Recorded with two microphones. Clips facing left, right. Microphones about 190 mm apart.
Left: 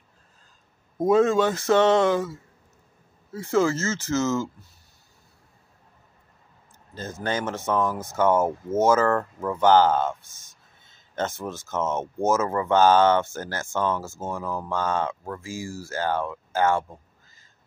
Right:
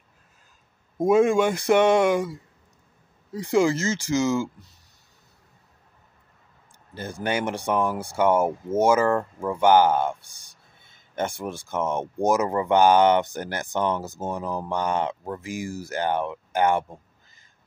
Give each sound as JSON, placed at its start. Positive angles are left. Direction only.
{"t": 0.9, "sound": "speech", "side_deg": -10}
{"t": 7.0, "sound": "speech", "side_deg": -15}